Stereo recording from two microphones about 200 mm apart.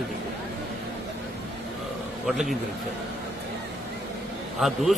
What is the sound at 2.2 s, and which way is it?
Speech, centre (ahead or behind).